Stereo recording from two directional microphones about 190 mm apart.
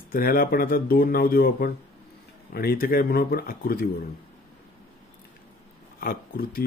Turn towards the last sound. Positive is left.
turn(degrees=50)  # may be behind; listen again after turning